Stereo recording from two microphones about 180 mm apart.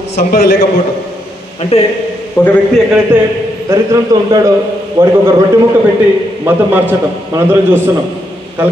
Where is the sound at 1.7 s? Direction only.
35° left (ahead or behind).